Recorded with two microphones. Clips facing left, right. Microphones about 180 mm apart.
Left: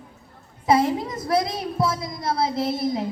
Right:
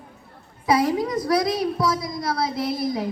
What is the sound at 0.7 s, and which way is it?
A woman's voice, 25° left (ahead or behind).